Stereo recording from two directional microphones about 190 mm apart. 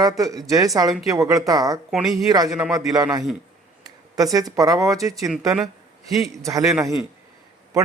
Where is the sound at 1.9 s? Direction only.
Centre (ahead or behind).